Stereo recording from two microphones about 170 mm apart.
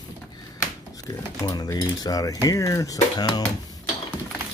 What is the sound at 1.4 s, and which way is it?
Speech, 20° left (ahead or behind).